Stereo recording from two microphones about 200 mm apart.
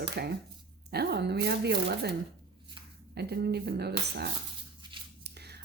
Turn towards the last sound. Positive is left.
turn(degrees=-55)  # may be behind; listen again after turning